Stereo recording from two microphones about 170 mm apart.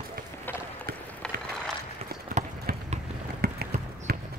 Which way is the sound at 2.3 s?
60° right (ahead or behind).